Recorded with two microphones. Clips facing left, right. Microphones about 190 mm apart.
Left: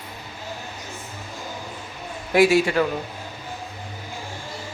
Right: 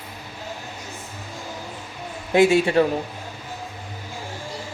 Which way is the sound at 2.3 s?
25° right (ahead or behind).